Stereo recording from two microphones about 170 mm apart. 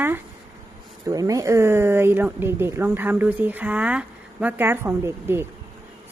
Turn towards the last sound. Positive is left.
turn(degrees=-15)  # may be behind; listen again after turning